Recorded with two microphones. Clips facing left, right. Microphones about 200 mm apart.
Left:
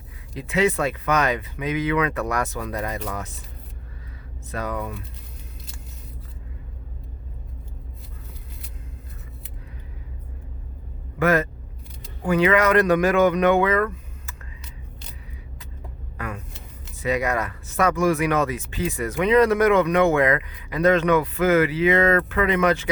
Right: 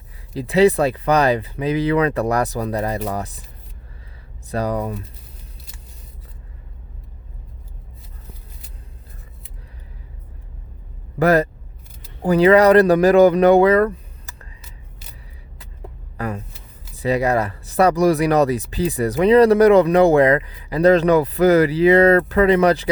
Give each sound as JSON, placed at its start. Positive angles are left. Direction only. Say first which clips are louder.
{"t": 0.3, "sound": "speech", "louder": "right 7 dB", "side_deg": -35}
{"t": 4.5, "sound": "speech", "louder": "right 6 dB", "side_deg": -35}
{"t": 11.2, "sound": "speech", "louder": "right 5 dB", "side_deg": -35}
{"t": 16.1, "sound": "speech", "louder": "right 6 dB", "side_deg": -35}